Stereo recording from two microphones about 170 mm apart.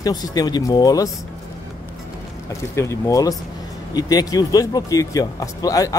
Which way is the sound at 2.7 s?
15° left (ahead or behind).